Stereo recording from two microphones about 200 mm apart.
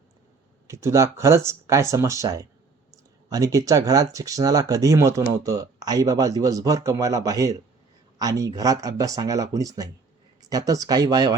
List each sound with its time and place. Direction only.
0.7 s speech: 15° right (ahead or behind)